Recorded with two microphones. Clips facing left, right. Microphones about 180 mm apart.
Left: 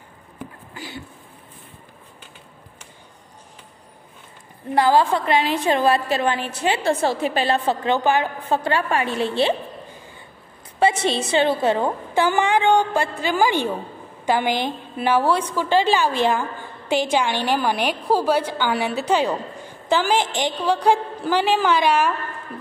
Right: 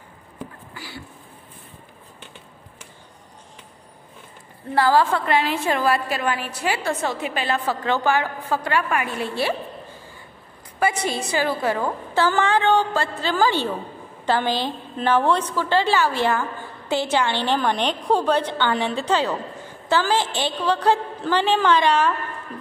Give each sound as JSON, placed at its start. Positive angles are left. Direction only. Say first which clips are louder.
{"t": 0.7, "sound": "a sound", "louder": "left 3 dB", "side_deg": 20}
{"t": 4.7, "sound": "a woman's voice", "louder": "left 1 dB", "side_deg": 20}
{"t": 10.8, "sound": "a woman's voice", "louder": "left 4 dB", "side_deg": 25}